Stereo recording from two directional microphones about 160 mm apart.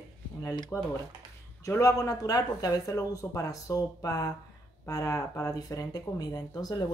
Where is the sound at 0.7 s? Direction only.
10° left (ahead or behind).